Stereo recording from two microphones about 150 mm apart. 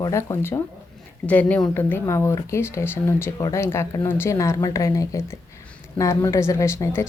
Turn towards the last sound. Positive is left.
turn(degrees=20)  # may be behind; listen again after turning